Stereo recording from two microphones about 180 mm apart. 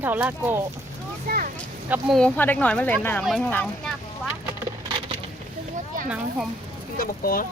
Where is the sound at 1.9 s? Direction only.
Centre (ahead or behind).